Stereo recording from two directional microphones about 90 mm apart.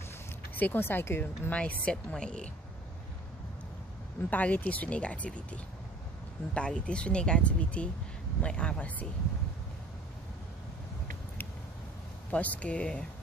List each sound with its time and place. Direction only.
0.6 s a woman's voice: 20° left (ahead or behind)
4.3 s speech: 20° left (ahead or behind)
12.3 s speech: 15° left (ahead or behind)